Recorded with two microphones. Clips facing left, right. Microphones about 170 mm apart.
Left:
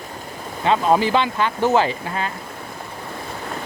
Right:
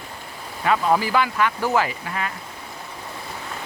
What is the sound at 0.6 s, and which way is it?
Speech, 25° left (ahead or behind).